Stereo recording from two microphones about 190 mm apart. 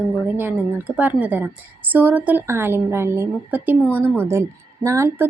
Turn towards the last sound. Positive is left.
turn(degrees=-15)  # may be behind; listen again after turning